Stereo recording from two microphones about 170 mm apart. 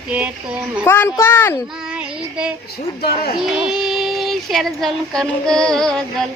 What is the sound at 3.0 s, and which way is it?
Speech, 70° left (ahead or behind).